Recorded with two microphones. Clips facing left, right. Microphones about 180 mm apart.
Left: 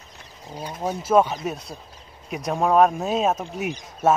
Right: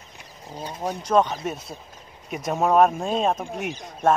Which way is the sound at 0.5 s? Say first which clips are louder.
Left 1 dB; 10° left (ahead or behind).